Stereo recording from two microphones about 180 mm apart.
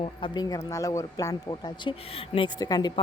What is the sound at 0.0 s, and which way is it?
A woman's voice, 25° left (ahead or behind).